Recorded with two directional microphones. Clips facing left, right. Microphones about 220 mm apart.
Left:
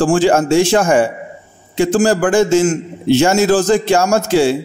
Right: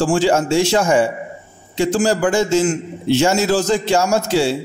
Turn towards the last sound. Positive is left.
turn(degrees=50)  # may be behind; listen again after turning